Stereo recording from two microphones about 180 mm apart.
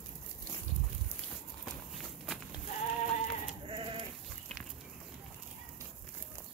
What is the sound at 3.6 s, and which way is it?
Sheep, 30° right (ahead or behind).